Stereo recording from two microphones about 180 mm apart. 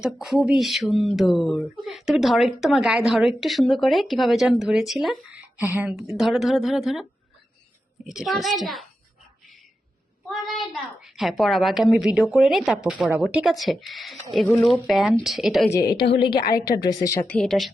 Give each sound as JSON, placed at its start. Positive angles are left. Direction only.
{"t": 0.0, "sound": "speech", "side_deg": 0}
{"t": 10.2, "sound": "speech", "side_deg": 0}
{"t": 16.0, "sound": "a woman's voice", "side_deg": 65}
{"t": 16.8, "sound": "speech", "side_deg": 20}